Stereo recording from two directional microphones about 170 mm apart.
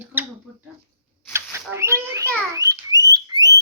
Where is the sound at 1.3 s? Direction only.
15° right (ahead or behind).